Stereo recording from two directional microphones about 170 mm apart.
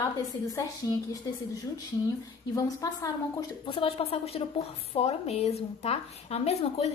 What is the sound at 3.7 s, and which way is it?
A woman's voice, 30° left (ahead or behind).